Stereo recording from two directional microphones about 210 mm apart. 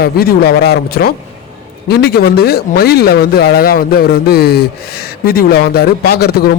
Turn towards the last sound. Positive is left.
turn(degrees=50)  # may be behind; listen again after turning